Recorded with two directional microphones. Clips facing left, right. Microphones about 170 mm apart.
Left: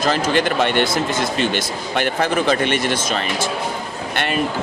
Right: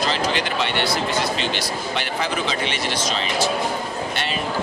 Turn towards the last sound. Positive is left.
turn(degrees=55)  # may be behind; listen again after turning